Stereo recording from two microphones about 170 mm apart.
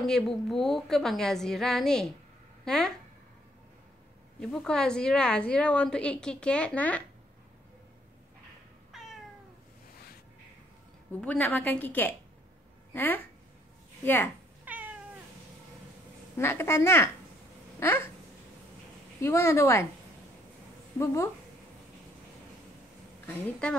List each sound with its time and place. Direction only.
0.0 s a woman's voice: centre (ahead or behind)
4.4 s a woman's voice: 5° left (ahead or behind)
11.1 s a woman's voice: 10° left (ahead or behind)
14.6 s cat: 10° right (ahead or behind)
16.3 s a woman's voice: 15° left (ahead or behind)
17.7 s a sound: 15° left (ahead or behind)
19.2 s a woman's voice: 15° left (ahead or behind)
21.0 s a woman's voice: 15° left (ahead or behind)
23.2 s a woman's voice: 5° left (ahead or behind)